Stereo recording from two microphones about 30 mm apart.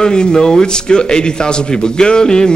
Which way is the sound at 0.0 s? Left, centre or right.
Left.